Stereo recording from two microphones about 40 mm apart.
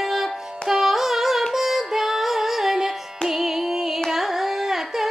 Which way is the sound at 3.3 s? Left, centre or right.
Centre.